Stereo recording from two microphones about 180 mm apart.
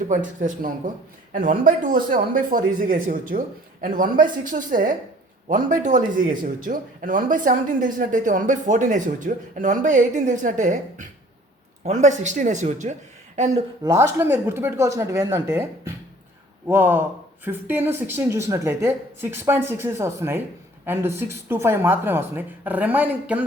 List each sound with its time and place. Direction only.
0.1 s speech: 45° right (ahead or behind)
13.8 s speech: 15° right (ahead or behind)